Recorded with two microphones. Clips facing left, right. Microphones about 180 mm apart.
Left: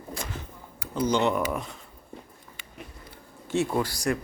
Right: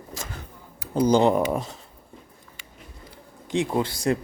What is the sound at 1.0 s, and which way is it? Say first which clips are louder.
Speech: right 5 dB; 35° right (ahead or behind).